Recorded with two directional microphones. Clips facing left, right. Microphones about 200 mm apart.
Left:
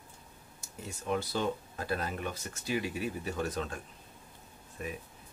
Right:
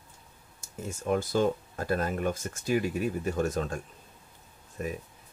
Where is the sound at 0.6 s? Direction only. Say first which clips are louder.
Right 6 dB; 45° right (ahead or behind).